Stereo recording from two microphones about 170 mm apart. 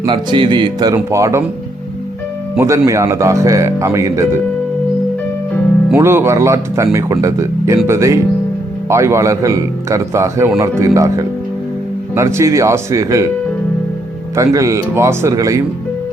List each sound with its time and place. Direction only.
0.0 s speech: 30° right (ahead or behind)
2.6 s speech: 20° right (ahead or behind)
5.9 s speech: 15° right (ahead or behind)
14.3 s speech: 20° right (ahead or behind)